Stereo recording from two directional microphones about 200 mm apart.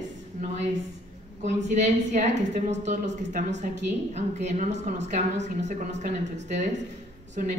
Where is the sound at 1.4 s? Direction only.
35° right (ahead or behind).